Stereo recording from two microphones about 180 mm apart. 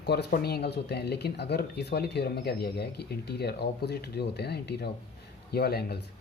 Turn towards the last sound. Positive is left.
turn(degrees=60)  # may be behind; listen again after turning